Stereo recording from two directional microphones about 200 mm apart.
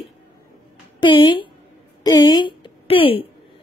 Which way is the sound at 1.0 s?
25° left (ahead or behind).